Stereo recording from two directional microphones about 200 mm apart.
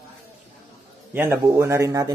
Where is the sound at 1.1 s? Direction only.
10° right (ahead or behind).